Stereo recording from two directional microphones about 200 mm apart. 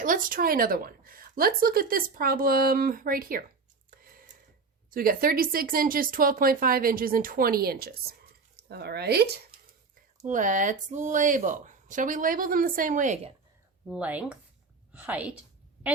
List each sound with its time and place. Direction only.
0.0 s a woman's voice: 40° right (ahead or behind)
3.9 s a sound: 45° right (ahead or behind)
4.9 s a woman's voice: 45° right (ahead or behind)
10.2 s speech: 40° right (ahead or behind)
13.8 s a woman's voice: 5° right (ahead or behind)